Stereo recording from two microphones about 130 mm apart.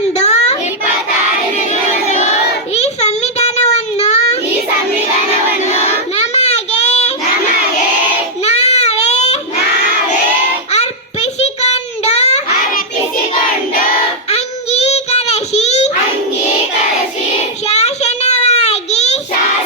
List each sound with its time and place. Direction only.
0.2 s a sound: 55° left (ahead or behind)
2.7 s child singing: 55° left (ahead or behind)
5.6 s child singing: 55° left (ahead or behind)
8.5 s baby cry: 55° left (ahead or behind)
10.7 s child singing: 55° left (ahead or behind)
14.3 s child singing: 55° left (ahead or behind)
17.7 s child singing: 55° left (ahead or behind)